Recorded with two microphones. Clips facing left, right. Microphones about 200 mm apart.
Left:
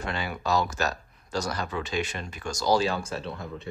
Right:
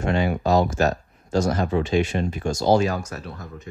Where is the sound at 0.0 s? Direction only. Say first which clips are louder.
Right 9 dB; 40° right (ahead or behind).